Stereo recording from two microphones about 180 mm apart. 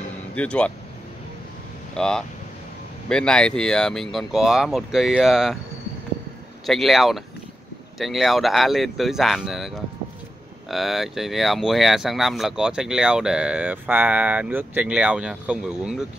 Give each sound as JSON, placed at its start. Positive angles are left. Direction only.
{"t": 0.4, "sound": "speech", "side_deg": 5}
{"t": 2.0, "sound": "speech", "side_deg": 5}
{"t": 6.6, "sound": "speech", "side_deg": 0}